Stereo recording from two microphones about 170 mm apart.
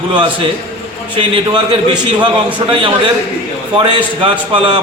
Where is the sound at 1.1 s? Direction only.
30° right (ahead or behind).